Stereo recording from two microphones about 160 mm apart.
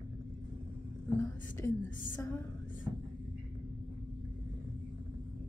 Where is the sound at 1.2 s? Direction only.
15° left (ahead or behind).